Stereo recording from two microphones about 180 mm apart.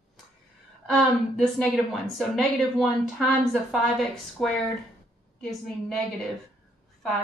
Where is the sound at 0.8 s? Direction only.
Centre (ahead or behind).